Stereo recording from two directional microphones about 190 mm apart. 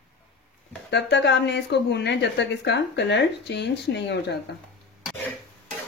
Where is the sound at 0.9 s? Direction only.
65° left (ahead or behind).